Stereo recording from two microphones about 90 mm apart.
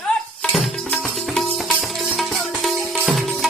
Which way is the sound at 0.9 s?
5° left (ahead or behind).